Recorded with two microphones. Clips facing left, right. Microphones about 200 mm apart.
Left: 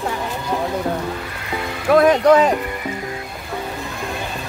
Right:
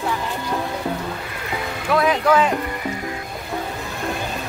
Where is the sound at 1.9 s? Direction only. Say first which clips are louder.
Left 5 dB; 45° left (ahead or behind).